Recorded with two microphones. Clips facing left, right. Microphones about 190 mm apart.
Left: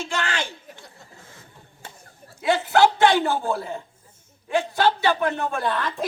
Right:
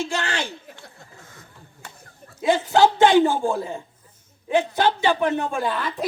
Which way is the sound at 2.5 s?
15° right (ahead or behind).